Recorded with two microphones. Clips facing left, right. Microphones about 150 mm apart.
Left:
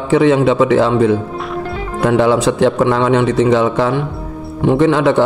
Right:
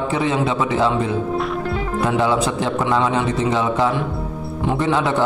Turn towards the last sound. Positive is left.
turn(degrees=75)  # may be behind; listen again after turning